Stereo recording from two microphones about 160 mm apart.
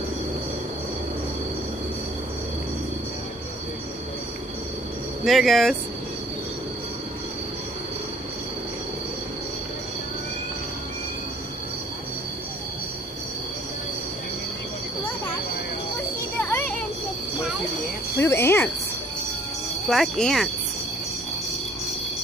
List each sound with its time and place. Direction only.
5.2 s cricket: centre (ahead or behind)
16.3 s children playing: 10° left (ahead or behind)
18.1 s cricket: 15° left (ahead or behind)
19.9 s cricket: centre (ahead or behind)